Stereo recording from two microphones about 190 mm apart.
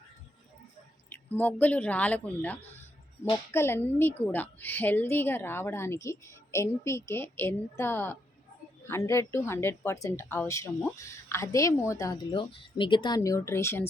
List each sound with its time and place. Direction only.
1.1 s speech: 10° left (ahead or behind)